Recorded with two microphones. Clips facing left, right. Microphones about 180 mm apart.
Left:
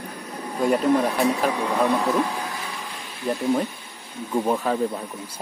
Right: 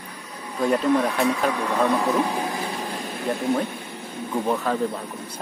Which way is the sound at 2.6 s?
35° right (ahead or behind).